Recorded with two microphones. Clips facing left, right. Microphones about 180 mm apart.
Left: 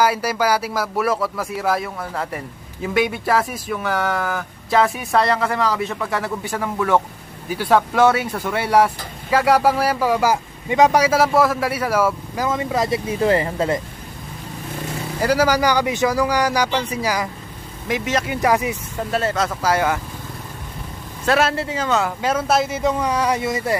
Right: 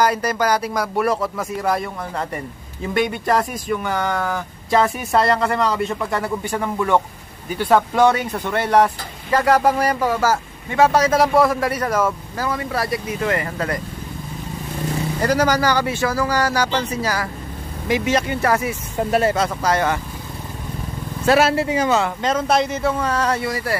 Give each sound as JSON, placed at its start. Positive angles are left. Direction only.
{"t": 0.0, "sound": "a man's voice", "side_deg": 10}
{"t": 12.4, "sound": "speech", "side_deg": 20}
{"t": 15.1, "sound": "speech", "side_deg": 10}
{"t": 17.8, "sound": "a man's voice", "side_deg": 0}
{"t": 18.3, "sound": "speech", "side_deg": 15}
{"t": 19.0, "sound": "speech", "side_deg": -10}
{"t": 19.4, "sound": "speech", "side_deg": 5}
{"t": 21.3, "sound": "speech", "side_deg": -5}
{"t": 21.9, "sound": "speech", "side_deg": 5}